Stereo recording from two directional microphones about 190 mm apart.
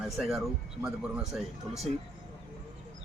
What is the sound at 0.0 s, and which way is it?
Speech, centre (ahead or behind).